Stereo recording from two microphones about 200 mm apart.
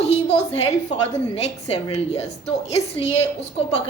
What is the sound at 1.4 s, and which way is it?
A woman's voice, 30° left (ahead or behind).